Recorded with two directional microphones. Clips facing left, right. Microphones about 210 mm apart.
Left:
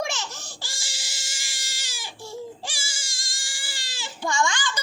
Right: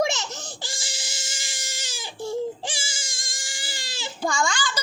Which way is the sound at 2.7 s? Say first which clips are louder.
Right 5 dB; 20° right (ahead or behind).